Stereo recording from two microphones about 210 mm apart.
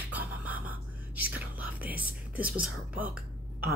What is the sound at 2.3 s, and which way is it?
Speech, 5° right (ahead or behind).